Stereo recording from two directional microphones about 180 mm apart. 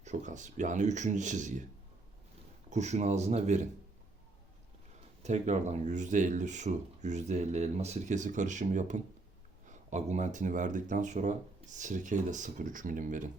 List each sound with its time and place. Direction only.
0.0 s speech: 40° right (ahead or behind)
2.6 s speech: 40° right (ahead or behind)
5.2 s speech: 40° right (ahead or behind)